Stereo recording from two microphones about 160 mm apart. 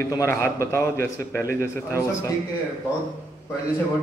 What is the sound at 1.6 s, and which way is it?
Speech, 15° left (ahead or behind).